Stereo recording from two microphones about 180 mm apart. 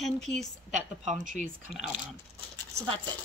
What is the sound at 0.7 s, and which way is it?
Speech, 40° right (ahead or behind).